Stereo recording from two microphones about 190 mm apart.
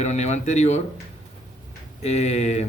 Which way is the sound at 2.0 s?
35° left (ahead or behind).